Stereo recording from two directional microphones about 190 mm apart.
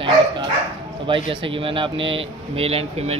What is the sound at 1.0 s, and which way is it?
Speech, 25° right (ahead or behind).